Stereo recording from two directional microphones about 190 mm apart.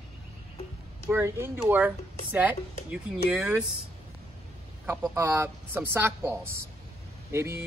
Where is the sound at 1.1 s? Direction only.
10° right (ahead or behind).